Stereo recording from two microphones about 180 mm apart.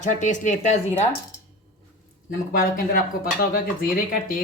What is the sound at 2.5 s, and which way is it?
A woman's voice, 55° left (ahead or behind).